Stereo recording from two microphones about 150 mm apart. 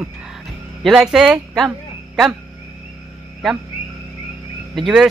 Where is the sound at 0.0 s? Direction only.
5° right (ahead or behind).